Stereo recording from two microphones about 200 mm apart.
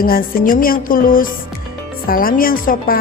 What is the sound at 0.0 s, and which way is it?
Speech, 45° left (ahead or behind).